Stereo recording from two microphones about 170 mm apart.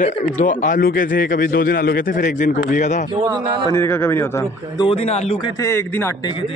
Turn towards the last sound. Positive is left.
turn(degrees=15)  # may be behind; listen again after turning